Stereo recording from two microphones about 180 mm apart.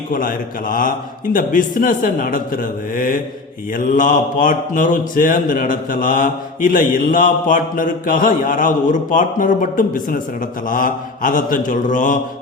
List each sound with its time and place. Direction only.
0.1 s mantra: 50° left (ahead or behind)